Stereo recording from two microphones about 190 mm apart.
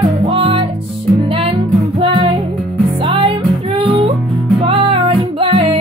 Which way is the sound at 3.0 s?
25° right (ahead or behind).